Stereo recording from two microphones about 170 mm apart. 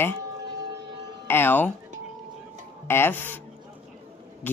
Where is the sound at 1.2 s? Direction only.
15° left (ahead or behind).